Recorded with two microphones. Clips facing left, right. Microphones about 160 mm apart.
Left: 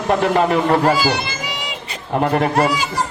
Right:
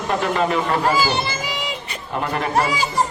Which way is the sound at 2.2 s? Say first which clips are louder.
Left 4 dB; 50° left (ahead or behind).